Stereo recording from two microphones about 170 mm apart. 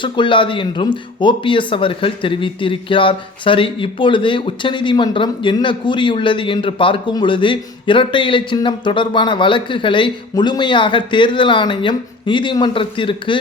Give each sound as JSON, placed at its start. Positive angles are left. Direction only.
{"t": 0.0, "sound": "speech", "side_deg": 30}